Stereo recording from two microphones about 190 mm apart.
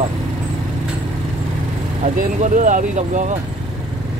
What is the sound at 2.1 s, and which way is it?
Speech, 40° right (ahead or behind).